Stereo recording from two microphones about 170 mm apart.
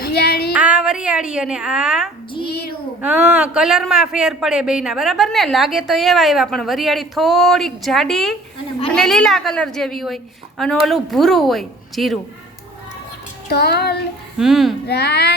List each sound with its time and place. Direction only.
0.0 s child singing: 70° left (ahead or behind)
0.5 s a sound: 5° right (ahead or behind)
2.4 s a sound: 65° left (ahead or behind)
3.0 s a man's voice: 5° right (ahead or behind)
13.5 s speech: 70° left (ahead or behind)
14.3 s a man's voice: centre (ahead or behind)
14.8 s speech: 75° left (ahead or behind)